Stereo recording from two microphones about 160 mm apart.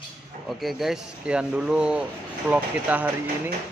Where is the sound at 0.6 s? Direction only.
Centre (ahead or behind).